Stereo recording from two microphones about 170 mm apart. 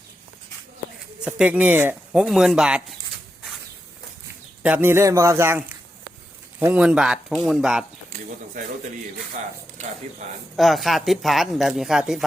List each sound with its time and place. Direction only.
1.2 s a man's voice: 5° right (ahead or behind)
4.6 s a man's voice: 10° right (ahead or behind)
9.8 s speech: 45° right (ahead or behind)
10.6 s speech: centre (ahead or behind)